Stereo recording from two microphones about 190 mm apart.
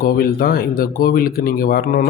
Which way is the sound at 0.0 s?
50° left (ahead or behind).